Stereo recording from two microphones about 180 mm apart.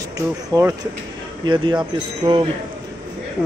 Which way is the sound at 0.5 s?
20° right (ahead or behind).